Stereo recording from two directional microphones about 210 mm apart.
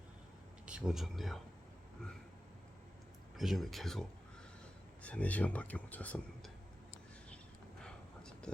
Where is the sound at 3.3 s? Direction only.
Centre (ahead or behind).